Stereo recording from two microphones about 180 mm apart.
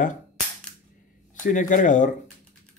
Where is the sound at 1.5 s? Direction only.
45° left (ahead or behind).